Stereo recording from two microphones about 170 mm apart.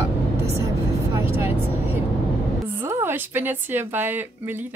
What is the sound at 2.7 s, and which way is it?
A woman's voice, 15° right (ahead or behind).